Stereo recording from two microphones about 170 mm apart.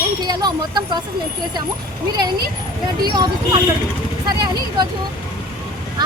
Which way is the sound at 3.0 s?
25° right (ahead or behind).